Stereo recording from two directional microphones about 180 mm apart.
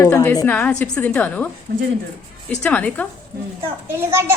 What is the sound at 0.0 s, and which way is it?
A woman's voice, 15° left (ahead or behind).